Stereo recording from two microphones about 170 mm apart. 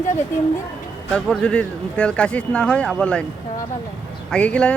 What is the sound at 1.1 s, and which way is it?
Speech, 5° left (ahead or behind).